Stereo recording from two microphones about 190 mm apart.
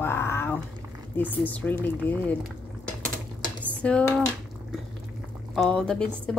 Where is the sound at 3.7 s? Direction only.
5° left (ahead or behind).